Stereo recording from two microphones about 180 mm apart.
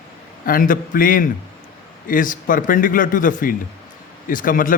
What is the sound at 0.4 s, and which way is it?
A man's voice, 50° left (ahead or behind).